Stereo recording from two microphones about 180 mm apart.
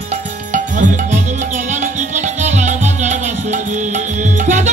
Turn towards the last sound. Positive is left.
turn(degrees=-45)  # may be behind; listen again after turning